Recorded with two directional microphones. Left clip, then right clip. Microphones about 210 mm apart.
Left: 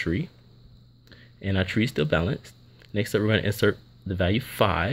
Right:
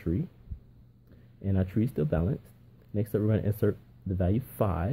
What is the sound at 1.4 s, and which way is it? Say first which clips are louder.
Speech: left 6 dB; centre (ahead or behind).